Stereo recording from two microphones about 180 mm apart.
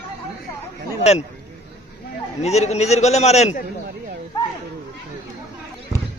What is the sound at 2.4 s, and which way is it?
A man's voice, 35° left (ahead or behind).